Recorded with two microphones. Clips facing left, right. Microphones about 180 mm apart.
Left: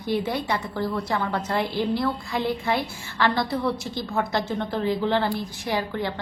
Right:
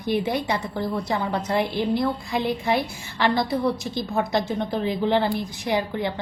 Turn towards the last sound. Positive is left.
turn(degrees=-20)  # may be behind; listen again after turning